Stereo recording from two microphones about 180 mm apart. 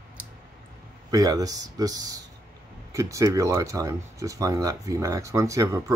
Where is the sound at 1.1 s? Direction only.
20° right (ahead or behind).